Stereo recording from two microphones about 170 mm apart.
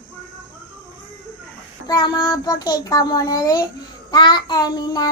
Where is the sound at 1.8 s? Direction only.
25° left (ahead or behind).